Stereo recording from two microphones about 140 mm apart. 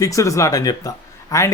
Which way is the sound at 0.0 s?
25° left (ahead or behind).